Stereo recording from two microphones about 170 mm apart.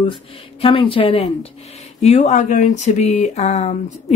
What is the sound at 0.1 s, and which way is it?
Speech, 30° left (ahead or behind).